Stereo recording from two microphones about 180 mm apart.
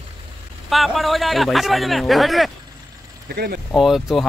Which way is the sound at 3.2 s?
65° right (ahead or behind).